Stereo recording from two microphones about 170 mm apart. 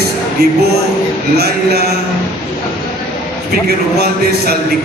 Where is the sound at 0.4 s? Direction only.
75° right (ahead or behind).